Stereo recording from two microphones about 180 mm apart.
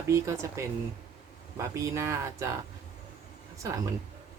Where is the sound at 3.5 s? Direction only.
15° right (ahead or behind).